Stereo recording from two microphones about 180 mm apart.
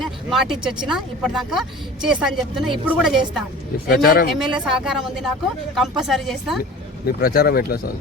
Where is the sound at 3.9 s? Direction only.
55° left (ahead or behind).